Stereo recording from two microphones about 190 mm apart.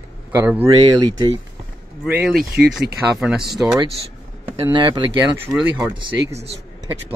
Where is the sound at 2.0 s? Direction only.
Centre (ahead or behind).